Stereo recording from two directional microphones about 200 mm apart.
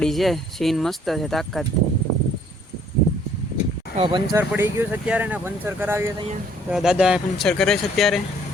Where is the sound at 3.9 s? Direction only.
25° right (ahead or behind).